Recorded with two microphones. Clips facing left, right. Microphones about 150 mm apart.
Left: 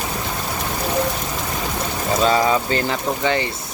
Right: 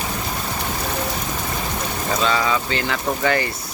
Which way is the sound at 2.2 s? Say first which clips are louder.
Left 4 dB; 40° left (ahead or behind).